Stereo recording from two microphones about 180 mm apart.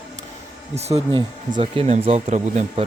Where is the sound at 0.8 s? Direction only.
35° right (ahead or behind).